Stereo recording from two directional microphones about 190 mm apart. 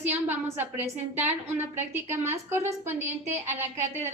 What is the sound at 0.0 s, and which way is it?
A woman's voice, 10° right (ahead or behind).